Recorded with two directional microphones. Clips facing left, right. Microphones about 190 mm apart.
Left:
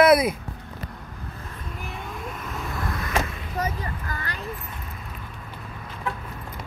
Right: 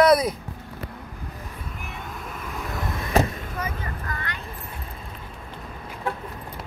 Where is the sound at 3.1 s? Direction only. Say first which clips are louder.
Right 8 dB; 40° right (ahead or behind).